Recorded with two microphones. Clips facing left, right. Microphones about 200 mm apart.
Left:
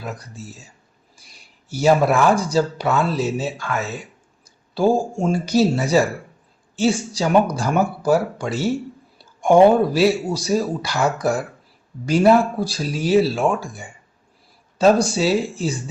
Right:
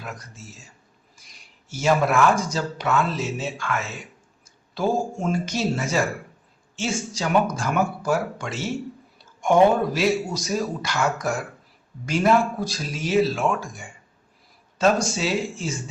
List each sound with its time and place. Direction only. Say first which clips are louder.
0.0 s speech: left 5 dB; 35° left (ahead or behind)